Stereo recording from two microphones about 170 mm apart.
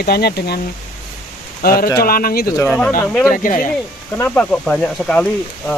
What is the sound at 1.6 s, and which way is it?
Speech, 60° left (ahead or behind).